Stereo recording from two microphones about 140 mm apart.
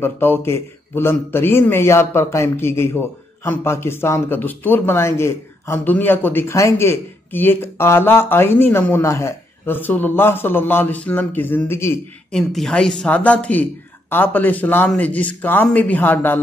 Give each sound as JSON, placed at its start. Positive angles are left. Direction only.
{"t": 0.0, "sound": "a man's voice", "side_deg": 15}
{"t": 12.3, "sound": "a man's voice", "side_deg": 5}